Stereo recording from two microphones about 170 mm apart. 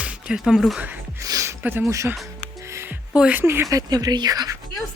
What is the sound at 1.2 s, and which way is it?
Speech, 20° right (ahead or behind).